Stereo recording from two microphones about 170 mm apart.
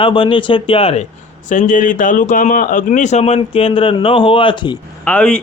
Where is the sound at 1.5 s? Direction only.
50° left (ahead or behind); by 4.8 s 25° left (ahead or behind).